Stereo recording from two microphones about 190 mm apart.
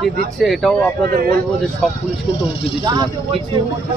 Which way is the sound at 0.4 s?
Centre (ahead or behind).